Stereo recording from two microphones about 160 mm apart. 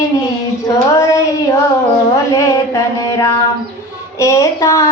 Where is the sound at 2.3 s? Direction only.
20° left (ahead or behind).